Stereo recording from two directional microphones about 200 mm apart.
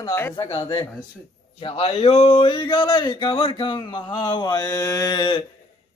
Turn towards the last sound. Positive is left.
turn(degrees=20)  # may be behind; listen again after turning